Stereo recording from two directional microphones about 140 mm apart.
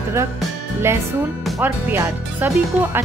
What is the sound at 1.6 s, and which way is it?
Music, 15° right (ahead or behind).